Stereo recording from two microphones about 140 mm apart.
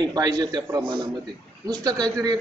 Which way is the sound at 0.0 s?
30° right (ahead or behind).